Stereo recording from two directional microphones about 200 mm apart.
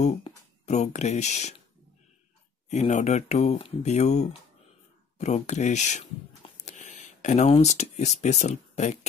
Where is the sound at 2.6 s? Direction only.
35° left (ahead or behind).